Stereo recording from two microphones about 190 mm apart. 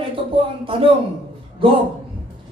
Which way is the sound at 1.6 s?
25° right (ahead or behind).